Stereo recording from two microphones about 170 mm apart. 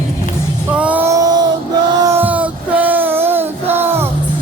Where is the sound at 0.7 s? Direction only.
10° right (ahead or behind).